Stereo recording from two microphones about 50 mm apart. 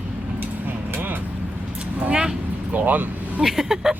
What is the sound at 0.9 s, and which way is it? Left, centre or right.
Vehicle, right.